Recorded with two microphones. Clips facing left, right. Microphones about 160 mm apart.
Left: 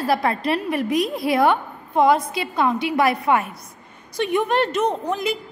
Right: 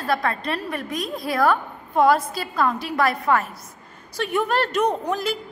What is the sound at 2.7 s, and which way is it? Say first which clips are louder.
Speech: left 3 dB; centre (ahead or behind).